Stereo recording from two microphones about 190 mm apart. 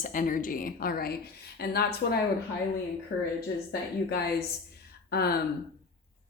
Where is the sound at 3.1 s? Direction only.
70° left (ahead or behind).